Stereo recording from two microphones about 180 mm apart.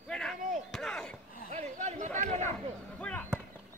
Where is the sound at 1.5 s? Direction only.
40° right (ahead or behind).